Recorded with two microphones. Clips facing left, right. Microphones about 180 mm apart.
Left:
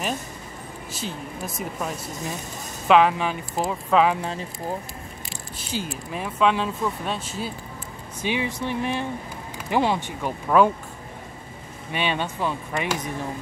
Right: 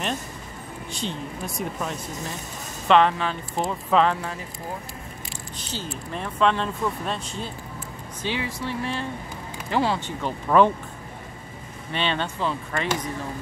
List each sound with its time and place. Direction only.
0.9 s speech: 5° left (ahead or behind)
5.7 s speech: 10° left (ahead or behind)
8.2 s speech: 20° left (ahead or behind)
11.9 s speech: 10° left (ahead or behind)